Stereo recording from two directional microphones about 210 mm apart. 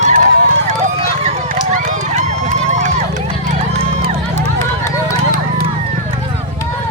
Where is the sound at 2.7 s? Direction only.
35° right (ahead or behind).